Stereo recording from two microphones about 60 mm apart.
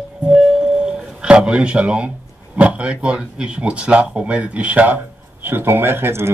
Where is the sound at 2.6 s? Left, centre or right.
Right.